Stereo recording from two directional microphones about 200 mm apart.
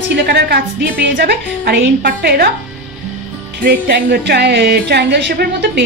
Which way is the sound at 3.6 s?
50° right (ahead or behind).